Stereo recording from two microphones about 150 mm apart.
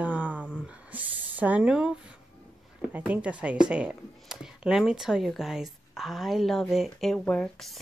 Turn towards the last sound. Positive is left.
turn(degrees=5)  # may be behind; listen again after turning